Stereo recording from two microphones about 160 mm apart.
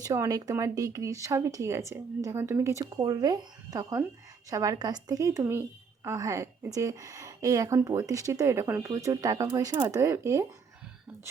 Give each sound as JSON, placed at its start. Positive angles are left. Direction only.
{"t": 0.0, "sound": "a woman's voice", "side_deg": -20}